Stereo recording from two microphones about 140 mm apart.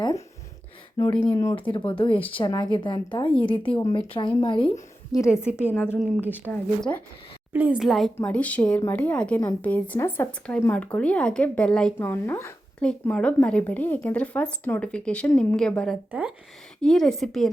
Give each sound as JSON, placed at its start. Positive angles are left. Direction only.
{"t": 1.0, "sound": "a woman's voice", "side_deg": 25}
{"t": 1.5, "sound": "a woman's voice", "side_deg": 35}
{"t": 5.1, "sound": "a woman's voice", "side_deg": 20}
{"t": 7.5, "sound": "a woman's voice", "side_deg": -15}
{"t": 7.8, "sound": "speech", "side_deg": 0}
{"t": 11.9, "sound": "a woman's voice", "side_deg": 15}